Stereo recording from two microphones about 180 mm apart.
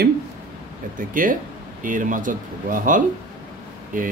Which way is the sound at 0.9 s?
50° right (ahead or behind).